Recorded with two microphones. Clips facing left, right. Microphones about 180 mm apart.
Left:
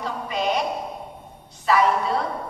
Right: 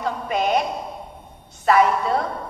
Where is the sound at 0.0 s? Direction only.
50° right (ahead or behind).